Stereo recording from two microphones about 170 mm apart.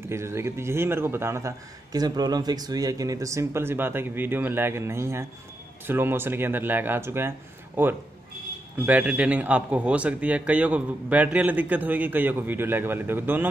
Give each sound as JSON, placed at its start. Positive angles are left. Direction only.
{"t": 0.1, "sound": "speech", "side_deg": -15}